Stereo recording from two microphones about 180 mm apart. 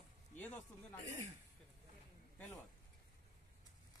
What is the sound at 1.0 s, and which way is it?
Speech, 40° right (ahead or behind).